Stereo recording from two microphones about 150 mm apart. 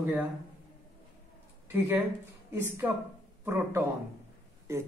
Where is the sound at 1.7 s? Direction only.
10° right (ahead or behind).